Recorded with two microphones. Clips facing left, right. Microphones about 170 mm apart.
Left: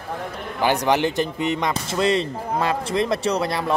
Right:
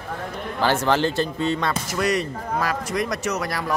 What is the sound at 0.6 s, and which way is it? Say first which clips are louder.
Speech: left 1 dB; 15° left (ahead or behind).